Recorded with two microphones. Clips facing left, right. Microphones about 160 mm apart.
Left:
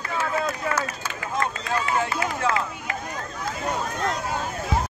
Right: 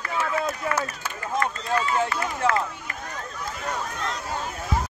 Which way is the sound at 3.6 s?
20° left (ahead or behind).